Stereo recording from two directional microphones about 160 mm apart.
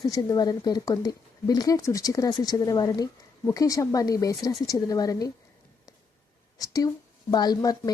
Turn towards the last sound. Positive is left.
turn(degrees=25)  # may be behind; listen again after turning